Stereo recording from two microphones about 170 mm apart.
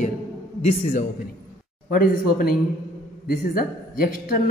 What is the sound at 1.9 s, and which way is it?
A man's voice, 55° left (ahead or behind).